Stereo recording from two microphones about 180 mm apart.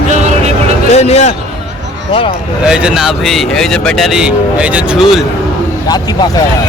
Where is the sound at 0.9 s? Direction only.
35° left (ahead or behind).